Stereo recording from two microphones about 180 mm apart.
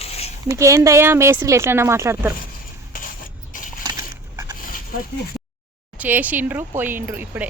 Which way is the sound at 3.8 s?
20° right (ahead or behind).